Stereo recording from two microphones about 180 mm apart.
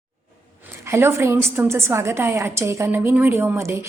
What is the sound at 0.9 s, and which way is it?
A woman's voice, 15° right (ahead or behind).